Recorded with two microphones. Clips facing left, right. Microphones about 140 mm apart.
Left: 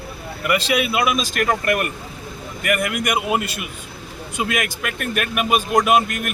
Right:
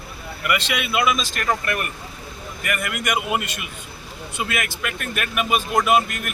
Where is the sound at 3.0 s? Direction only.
40° left (ahead or behind).